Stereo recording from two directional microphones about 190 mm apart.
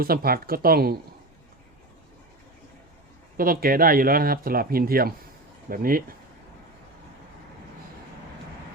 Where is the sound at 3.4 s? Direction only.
50° right (ahead or behind).